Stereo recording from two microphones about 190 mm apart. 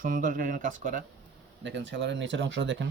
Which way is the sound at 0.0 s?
45° right (ahead or behind).